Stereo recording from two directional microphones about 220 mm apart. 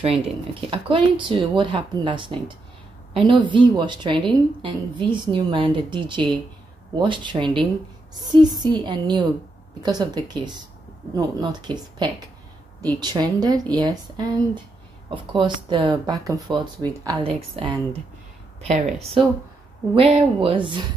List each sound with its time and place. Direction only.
0.0 s a woman's voice: 25° right (ahead or behind)
3.1 s a sound: 25° right (ahead or behind)
3.5 s a woman's voice: 20° right (ahead or behind)
18.7 s speech: centre (ahead or behind)
20.0 s a woman's voice: 25° right (ahead or behind)